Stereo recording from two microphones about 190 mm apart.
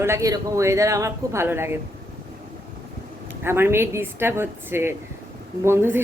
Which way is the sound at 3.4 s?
10° right (ahead or behind).